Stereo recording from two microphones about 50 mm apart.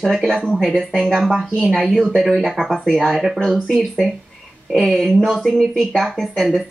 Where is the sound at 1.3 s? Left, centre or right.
Right.